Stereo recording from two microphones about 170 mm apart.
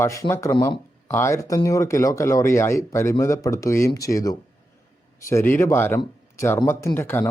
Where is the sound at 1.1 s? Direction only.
15° left (ahead or behind).